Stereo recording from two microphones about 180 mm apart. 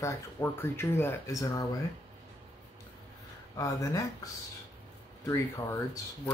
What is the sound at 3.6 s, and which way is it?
Speech, 15° left (ahead or behind).